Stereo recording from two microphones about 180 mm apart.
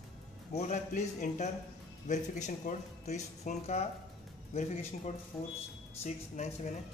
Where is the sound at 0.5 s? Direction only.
40° left (ahead or behind).